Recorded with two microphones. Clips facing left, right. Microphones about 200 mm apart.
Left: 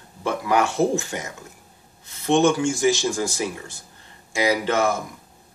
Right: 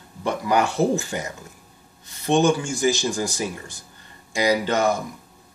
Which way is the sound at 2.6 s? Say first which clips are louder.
Left 2 dB; centre (ahead or behind).